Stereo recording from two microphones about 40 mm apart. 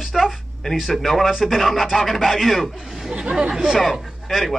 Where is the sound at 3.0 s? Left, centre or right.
Centre.